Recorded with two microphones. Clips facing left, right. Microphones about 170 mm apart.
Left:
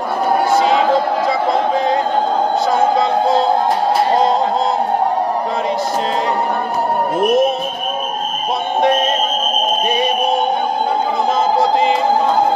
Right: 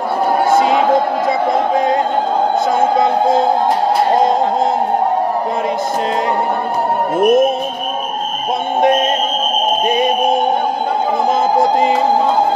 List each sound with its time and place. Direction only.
7.2 s music: 50° right (ahead or behind)